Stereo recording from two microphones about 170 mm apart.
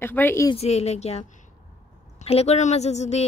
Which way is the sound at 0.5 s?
40° left (ahead or behind).